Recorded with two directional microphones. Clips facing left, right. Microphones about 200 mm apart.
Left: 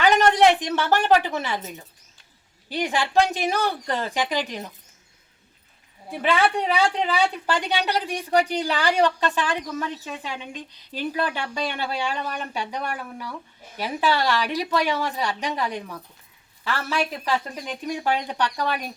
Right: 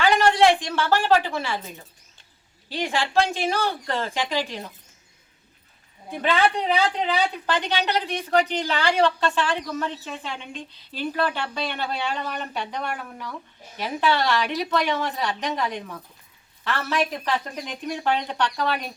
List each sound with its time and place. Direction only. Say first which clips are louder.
0.0 s a woman's voice: left 1 dB; 20° left (ahead or behind)
2.6 s a woman's voice: left 1 dB; 15° left (ahead or behind)
6.1 s a woman's voice: even; 10° left (ahead or behind)